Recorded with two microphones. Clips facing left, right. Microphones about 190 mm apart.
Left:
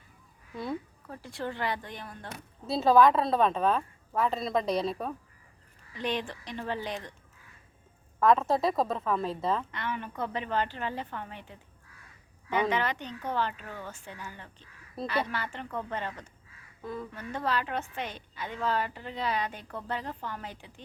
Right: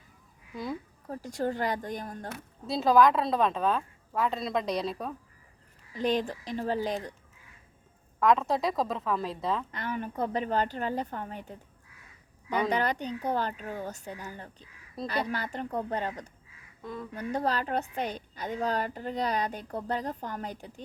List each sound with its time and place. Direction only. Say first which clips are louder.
0.5 s a woman's voice: left 1 dB; centre (ahead or behind)
1.0 s a woman's voice: right 5 dB; 40° right (ahead or behind)
2.6 s a woman's voice: left 1 dB; centre (ahead or behind)
5.9 s a woman's voice: right 5 dB; 40° right (ahead or behind)
8.2 s a woman's voice: left 1 dB; centre (ahead or behind)
9.7 s a woman's voice: right 2 dB; 40° right (ahead or behind)
16.8 s a woman's voice: left 1 dB; 5° left (ahead or behind)
17.2 s a woman's voice: right 3 dB; 40° right (ahead or behind)